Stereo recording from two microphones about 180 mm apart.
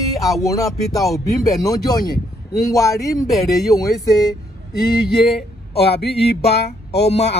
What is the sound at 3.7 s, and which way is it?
Speech, 20° left (ahead or behind).